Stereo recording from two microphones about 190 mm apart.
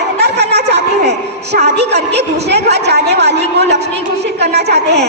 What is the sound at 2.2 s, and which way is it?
A woman's voice, 60° right (ahead or behind).